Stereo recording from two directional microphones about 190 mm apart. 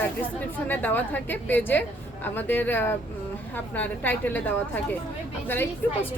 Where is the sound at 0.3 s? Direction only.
10° left (ahead or behind).